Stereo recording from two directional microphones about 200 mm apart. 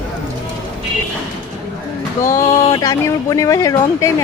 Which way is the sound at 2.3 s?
15° left (ahead or behind).